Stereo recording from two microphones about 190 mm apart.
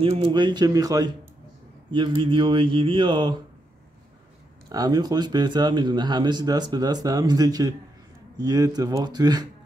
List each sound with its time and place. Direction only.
0.0 s speech: 30° right (ahead or behind)
4.6 s speech: 20° right (ahead or behind)